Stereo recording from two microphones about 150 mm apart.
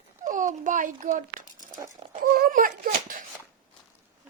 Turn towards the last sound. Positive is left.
turn(degrees=-65)  # may be behind; listen again after turning